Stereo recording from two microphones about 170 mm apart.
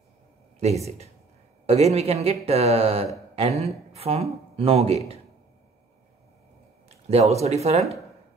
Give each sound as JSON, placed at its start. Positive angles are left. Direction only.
{"t": 0.8, "sound": "speech", "side_deg": -40}
{"t": 7.1, "sound": "speech", "side_deg": -40}